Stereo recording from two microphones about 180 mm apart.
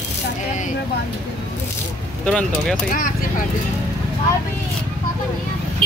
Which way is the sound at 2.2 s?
5° left (ahead or behind).